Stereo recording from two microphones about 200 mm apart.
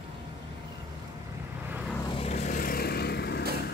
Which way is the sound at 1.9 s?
25° left (ahead or behind).